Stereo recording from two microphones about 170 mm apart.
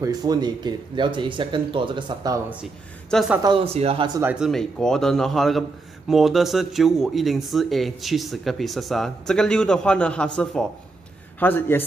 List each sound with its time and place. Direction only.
0.0 s speech: 25° right (ahead or behind)
2.6 s a man's voice: centre (ahead or behind)
3.4 s speech: 35° right (ahead or behind)
4.2 s speech: 10° right (ahead or behind)
4.5 s a man's voice: 5° left (ahead or behind)